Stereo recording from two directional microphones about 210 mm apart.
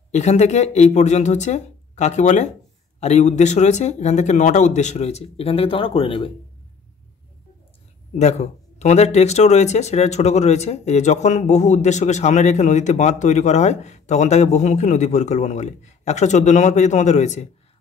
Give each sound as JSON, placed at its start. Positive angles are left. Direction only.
{"t": 0.1, "sound": "speech", "side_deg": 30}
{"t": 8.2, "sound": "speech", "side_deg": 30}